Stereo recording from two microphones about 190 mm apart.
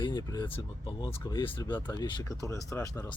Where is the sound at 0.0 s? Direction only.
20° left (ahead or behind).